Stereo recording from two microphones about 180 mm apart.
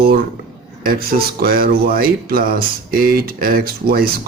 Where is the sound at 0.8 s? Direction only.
55° right (ahead or behind).